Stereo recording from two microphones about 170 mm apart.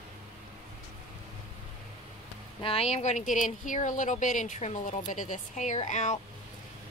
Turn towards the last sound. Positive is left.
turn(degrees=45)  # may be behind; listen again after turning